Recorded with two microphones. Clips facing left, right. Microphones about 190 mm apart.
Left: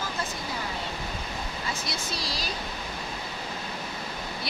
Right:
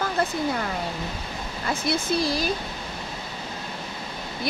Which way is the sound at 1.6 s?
55° right (ahead or behind).